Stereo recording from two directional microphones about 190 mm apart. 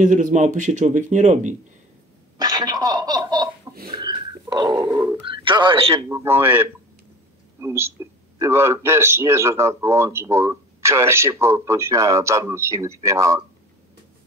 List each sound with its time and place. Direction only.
0.0 s speech: 45° right (ahead or behind)
2.3 s a sound: 20° right (ahead or behind)
5.3 s speech: 25° right (ahead or behind)
6.0 s a man's voice: 15° right (ahead or behind)